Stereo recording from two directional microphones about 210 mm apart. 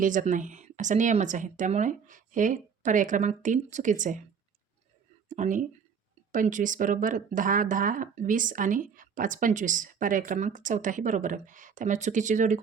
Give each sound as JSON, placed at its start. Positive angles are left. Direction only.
{"t": 0.0, "sound": "speech", "side_deg": -40}
{"t": 5.3, "sound": "speech", "side_deg": -40}